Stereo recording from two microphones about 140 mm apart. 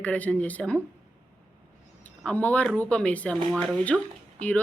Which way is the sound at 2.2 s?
10° left (ahead or behind).